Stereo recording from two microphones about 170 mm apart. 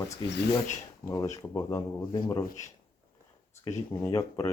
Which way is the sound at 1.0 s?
20° left (ahead or behind).